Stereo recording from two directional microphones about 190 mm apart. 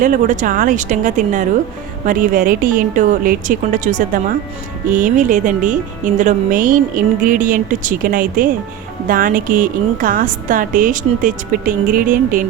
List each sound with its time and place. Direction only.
0.0 s a woman's voice: 45° right (ahead or behind)